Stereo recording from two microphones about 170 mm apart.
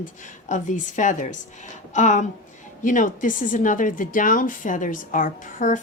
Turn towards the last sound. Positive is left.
turn(degrees=50)  # may be behind; listen again after turning